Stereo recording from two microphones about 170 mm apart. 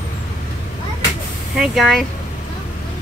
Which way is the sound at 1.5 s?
Centre (ahead or behind).